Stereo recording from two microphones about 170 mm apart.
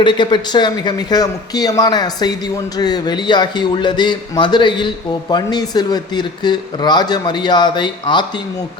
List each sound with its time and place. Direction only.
0.0 s speech: 25° left (ahead or behind)